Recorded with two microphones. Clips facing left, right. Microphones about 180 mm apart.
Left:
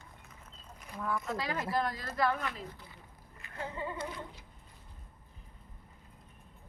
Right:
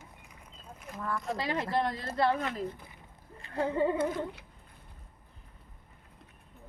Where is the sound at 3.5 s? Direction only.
65° right (ahead or behind).